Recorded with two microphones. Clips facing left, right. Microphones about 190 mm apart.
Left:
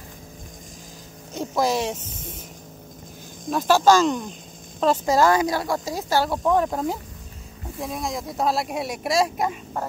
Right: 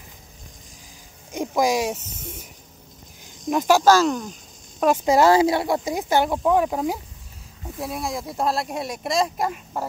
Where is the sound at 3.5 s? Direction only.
10° right (ahead or behind).